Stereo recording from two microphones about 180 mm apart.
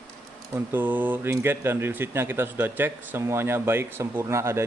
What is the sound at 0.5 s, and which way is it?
Speech, 10° right (ahead or behind).